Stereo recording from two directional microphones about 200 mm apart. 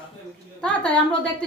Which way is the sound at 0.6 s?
5° left (ahead or behind).